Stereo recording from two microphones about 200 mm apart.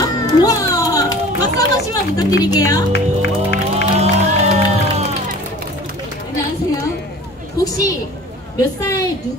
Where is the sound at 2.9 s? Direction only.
60° left (ahead or behind).